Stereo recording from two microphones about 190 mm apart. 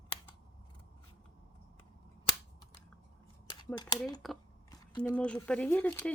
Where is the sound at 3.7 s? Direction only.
20° left (ahead or behind).